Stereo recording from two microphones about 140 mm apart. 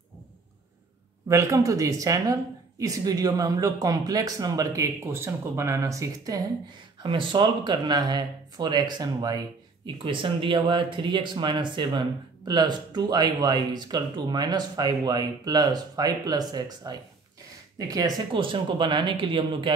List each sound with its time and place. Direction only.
1.3 s speech: 20° right (ahead or behind)
7.0 s speech: 35° right (ahead or behind)